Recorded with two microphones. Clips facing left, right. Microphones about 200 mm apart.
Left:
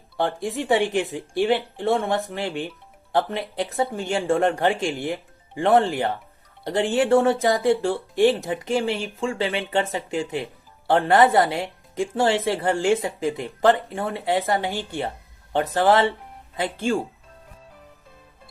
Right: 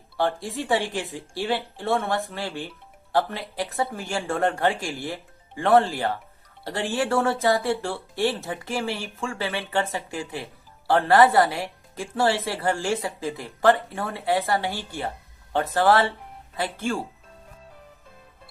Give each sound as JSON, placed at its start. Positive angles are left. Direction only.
{"t": 0.2, "sound": "speech", "side_deg": 20}